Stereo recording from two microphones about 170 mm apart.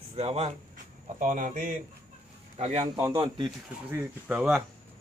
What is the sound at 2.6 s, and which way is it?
Speech, 40° right (ahead or behind).